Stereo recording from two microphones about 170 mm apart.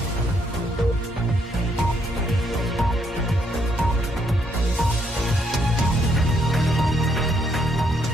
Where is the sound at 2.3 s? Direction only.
Centre (ahead or behind).